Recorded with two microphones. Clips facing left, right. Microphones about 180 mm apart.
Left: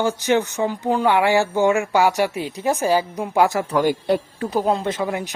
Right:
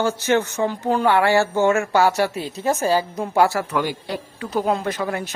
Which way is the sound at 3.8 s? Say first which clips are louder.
Left 7 dB; 50° left (ahead or behind).